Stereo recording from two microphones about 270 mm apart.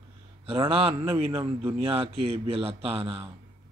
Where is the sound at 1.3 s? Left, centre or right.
Centre.